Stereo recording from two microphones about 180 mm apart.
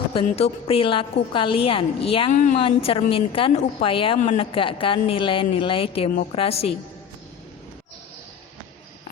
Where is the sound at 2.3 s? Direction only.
45° left (ahead or behind).